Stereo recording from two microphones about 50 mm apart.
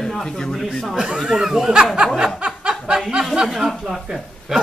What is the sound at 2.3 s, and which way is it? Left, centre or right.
Snicker, centre.